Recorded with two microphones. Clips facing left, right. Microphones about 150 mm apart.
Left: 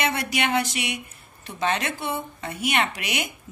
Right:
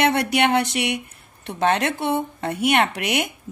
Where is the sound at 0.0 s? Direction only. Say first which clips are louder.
Right 7 dB; 60° right (ahead or behind).